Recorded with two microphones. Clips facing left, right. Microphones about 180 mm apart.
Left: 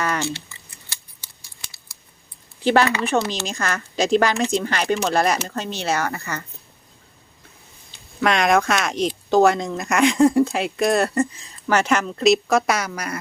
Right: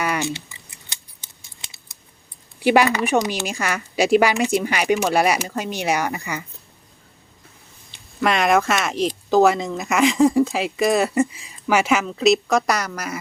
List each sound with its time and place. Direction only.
0.0 s scissors: 15° right (ahead or behind)
2.6 s speech: 10° right (ahead or behind)
8.2 s speech: 5° right (ahead or behind)